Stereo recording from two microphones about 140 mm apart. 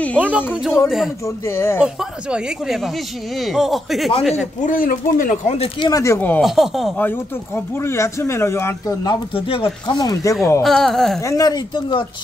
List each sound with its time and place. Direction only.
0.2 s speech: 5° right (ahead or behind)
1.2 s speech: 20° left (ahead or behind)
1.8 s speech: 5° right (ahead or behind)
4.6 s speech: 70° left (ahead or behind)
5.5 s speech: 45° left (ahead or behind)
5.9 s speech: 20° left (ahead or behind)
6.4 s speech: centre (ahead or behind)
7.0 s speech: 15° left (ahead or behind)
9.0 s speech: 35° left (ahead or behind)
9.8 s speech: 30° left (ahead or behind)
10.6 s speech: centre (ahead or behind)
11.1 s speech: 25° left (ahead or behind)